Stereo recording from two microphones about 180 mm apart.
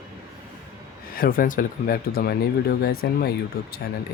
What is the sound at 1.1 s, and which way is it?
Speech, 50° left (ahead or behind).